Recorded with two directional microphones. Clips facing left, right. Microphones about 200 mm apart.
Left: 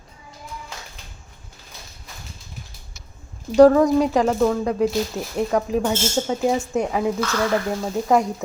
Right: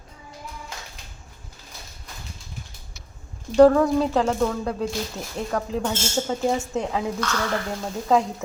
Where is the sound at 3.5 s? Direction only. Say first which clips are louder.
Left 2 dB; 10° left (ahead or behind).